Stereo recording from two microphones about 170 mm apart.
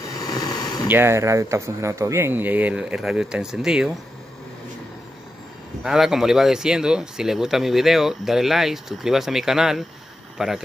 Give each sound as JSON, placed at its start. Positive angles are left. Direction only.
{"t": 0.2, "sound": "a sound", "side_deg": 20}
{"t": 0.8, "sound": "speech", "side_deg": -15}
{"t": 5.9, "sound": "speech", "side_deg": 0}